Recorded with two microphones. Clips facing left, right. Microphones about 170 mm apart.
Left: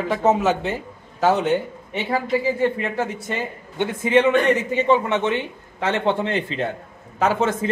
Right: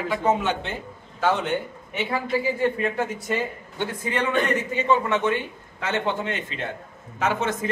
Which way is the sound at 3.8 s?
20° left (ahead or behind).